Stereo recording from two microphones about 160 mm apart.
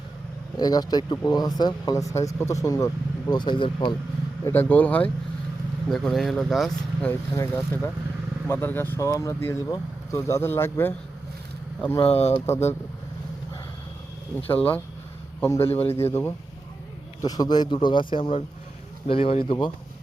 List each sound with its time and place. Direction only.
0.5 s speech: 25° left (ahead or behind)
4.4 s speech: 10° left (ahead or behind)
7.1 s speech: 15° left (ahead or behind)
11.9 s speech: 40° left (ahead or behind)
14.3 s a man's voice: 10° left (ahead or behind)
15.6 s speech: 40° left (ahead or behind)
15.9 s speech: 15° left (ahead or behind); by 19.7 s 30° left (ahead or behind)